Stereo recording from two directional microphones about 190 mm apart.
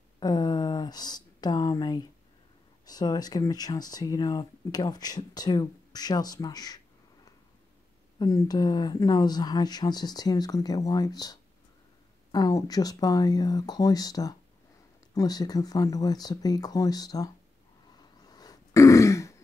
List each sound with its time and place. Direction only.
0.2 s speech: 20° left (ahead or behind)
8.2 s speech: 20° left (ahead or behind)
17.9 s throat clearing: 20° left (ahead or behind)